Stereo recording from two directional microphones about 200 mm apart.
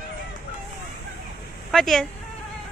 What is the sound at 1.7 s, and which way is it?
Speech, centre (ahead or behind).